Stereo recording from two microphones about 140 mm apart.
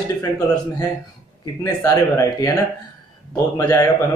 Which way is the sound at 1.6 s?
20° left (ahead or behind).